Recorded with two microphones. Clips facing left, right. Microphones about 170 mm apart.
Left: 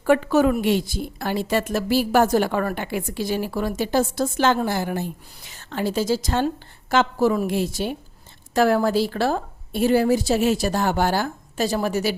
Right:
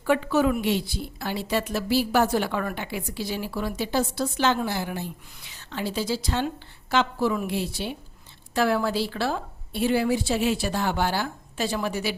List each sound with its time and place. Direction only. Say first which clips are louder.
0.0 s a woman's voice: left 4 dB; 45° left (ahead or behind)